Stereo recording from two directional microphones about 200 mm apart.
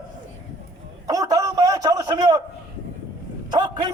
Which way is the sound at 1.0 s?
15° right (ahead or behind).